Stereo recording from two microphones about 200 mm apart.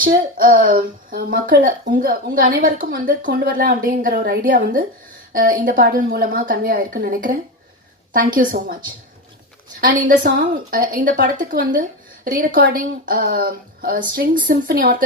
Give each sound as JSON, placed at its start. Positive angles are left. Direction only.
{"t": 0.0, "sound": "speech", "side_deg": -45}
{"t": 9.8, "sound": "speech", "side_deg": -45}